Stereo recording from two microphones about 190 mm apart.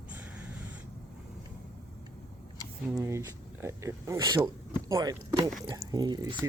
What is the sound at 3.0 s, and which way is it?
Speech, 15° right (ahead or behind).